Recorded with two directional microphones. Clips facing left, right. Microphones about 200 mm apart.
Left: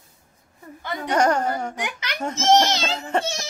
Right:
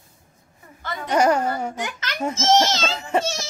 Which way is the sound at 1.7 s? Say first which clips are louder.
Even; 15° left (ahead or behind).